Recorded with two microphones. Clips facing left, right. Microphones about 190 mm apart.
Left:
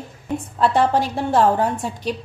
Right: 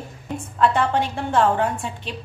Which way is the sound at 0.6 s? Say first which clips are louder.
Left 2 dB; 35° left (ahead or behind).